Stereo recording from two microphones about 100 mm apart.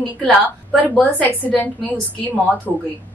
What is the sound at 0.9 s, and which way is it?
Speech, 10° left (ahead or behind).